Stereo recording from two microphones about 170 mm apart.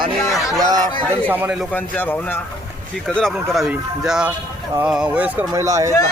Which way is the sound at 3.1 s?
Centre (ahead or behind).